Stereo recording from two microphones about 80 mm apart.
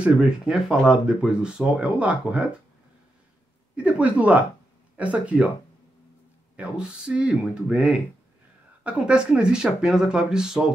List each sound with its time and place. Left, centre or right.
0.0 s speech: centre
3.7 s speech: centre
6.5 s speech: centre